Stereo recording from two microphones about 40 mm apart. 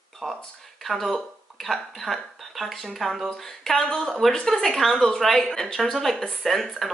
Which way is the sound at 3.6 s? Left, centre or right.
Centre.